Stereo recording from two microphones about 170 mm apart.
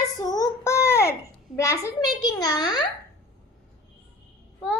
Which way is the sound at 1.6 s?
15° left (ahead or behind).